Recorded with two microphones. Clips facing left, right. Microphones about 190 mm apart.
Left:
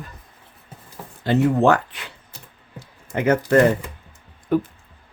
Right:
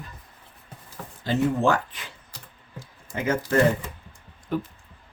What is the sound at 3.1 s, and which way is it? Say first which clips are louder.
Speech: left 7 dB; 65° left (ahead or behind).